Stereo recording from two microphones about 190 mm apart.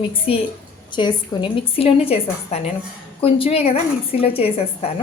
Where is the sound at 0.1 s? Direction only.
30° left (ahead or behind).